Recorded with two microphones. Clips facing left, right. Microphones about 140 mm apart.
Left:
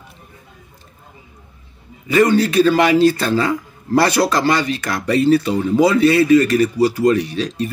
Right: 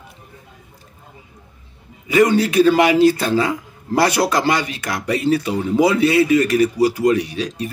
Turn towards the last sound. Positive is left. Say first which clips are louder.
# left 3 dB
turn(degrees=-10)  # may be behind; listen again after turning